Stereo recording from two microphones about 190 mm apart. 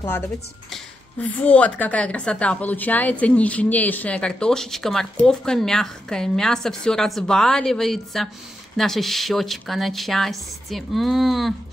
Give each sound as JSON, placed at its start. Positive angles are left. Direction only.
{"t": 0.7, "sound": "a woman's voice", "side_deg": 5}